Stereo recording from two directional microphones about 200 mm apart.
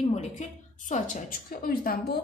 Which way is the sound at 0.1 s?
35° left (ahead or behind).